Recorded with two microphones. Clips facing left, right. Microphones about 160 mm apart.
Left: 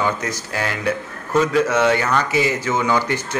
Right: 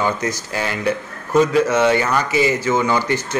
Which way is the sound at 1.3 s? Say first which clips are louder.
Right 2 dB; 5° right (ahead or behind).